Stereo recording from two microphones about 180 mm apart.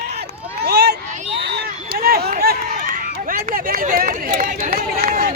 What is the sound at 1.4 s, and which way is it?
Run, 60° right (ahead or behind).